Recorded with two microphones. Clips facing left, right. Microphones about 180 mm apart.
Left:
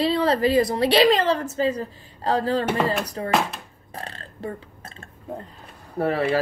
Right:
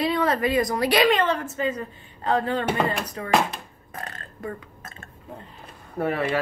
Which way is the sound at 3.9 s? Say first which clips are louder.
Left 1 dB; 30° left (ahead or behind).